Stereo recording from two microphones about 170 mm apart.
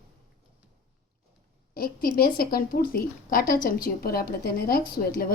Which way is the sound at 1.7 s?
60° left (ahead or behind).